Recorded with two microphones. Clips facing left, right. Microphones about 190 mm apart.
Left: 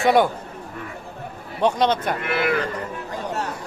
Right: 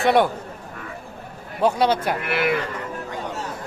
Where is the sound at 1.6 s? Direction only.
5° right (ahead or behind).